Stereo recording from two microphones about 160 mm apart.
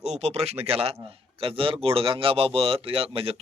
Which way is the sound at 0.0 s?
45° right (ahead or behind).